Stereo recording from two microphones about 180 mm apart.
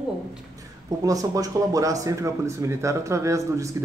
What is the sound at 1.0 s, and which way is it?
Speech, 20° right (ahead or behind).